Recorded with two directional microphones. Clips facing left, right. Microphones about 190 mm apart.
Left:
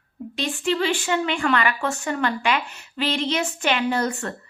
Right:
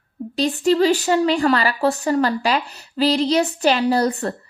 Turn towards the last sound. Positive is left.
turn(degrees=-35)  # may be behind; listen again after turning